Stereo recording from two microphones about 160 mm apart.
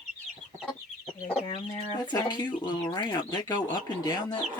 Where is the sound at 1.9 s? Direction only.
25° left (ahead or behind).